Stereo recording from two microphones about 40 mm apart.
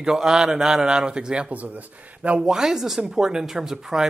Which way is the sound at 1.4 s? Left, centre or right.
Right.